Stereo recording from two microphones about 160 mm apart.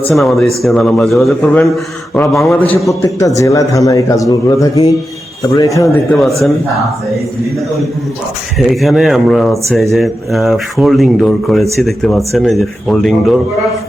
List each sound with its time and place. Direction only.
0.1 s a man's voice: centre (ahead or behind); by 6.0 s 20° left (ahead or behind)
6.1 s speech: centre (ahead or behind)
8.5 s speech: centre (ahead or behind)